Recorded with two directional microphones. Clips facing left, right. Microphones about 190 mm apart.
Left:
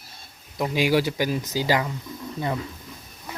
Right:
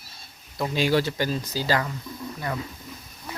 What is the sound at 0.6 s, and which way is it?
Speech, 15° left (ahead or behind).